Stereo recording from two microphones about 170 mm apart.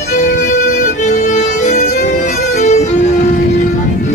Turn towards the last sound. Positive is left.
turn(degrees=40)  # may be behind; listen again after turning